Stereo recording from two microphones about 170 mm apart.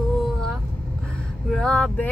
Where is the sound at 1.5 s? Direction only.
5° left (ahead or behind).